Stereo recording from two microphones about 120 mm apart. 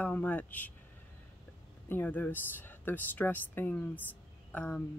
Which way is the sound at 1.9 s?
15° left (ahead or behind).